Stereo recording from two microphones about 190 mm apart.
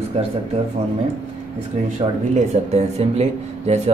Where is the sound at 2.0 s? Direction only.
35° right (ahead or behind).